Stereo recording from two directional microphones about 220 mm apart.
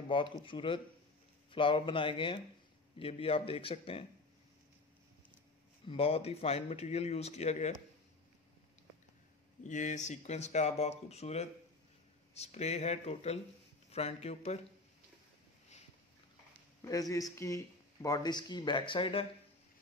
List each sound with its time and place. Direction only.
0.1 s speech: 20° left (ahead or behind)
5.9 s speech: 25° left (ahead or behind)
9.6 s speech: 35° left (ahead or behind)
16.8 s speech: 15° left (ahead or behind)